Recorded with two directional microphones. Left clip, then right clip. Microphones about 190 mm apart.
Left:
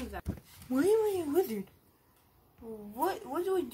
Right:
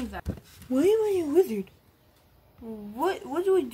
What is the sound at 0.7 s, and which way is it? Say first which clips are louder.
Speech: right 5 dB; 5° right (ahead or behind).